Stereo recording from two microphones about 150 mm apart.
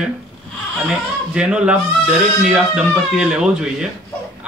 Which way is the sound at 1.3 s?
5° right (ahead or behind).